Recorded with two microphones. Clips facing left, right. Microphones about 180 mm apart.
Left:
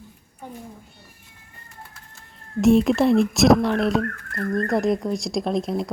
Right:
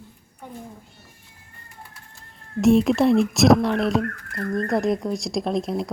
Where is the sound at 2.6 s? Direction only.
Centre (ahead or behind).